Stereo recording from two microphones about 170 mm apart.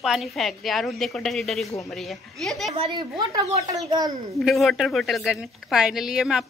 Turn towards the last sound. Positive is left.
turn(degrees=-5)  # may be behind; listen again after turning